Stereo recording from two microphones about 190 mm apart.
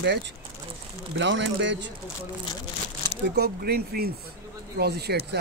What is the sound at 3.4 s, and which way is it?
Speech, 55° right (ahead or behind).